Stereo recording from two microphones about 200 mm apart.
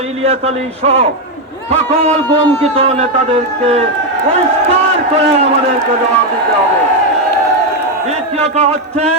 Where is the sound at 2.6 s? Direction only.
30° right (ahead or behind).